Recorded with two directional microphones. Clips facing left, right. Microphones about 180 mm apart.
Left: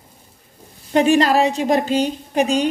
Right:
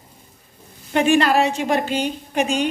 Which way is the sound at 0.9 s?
35° left (ahead or behind).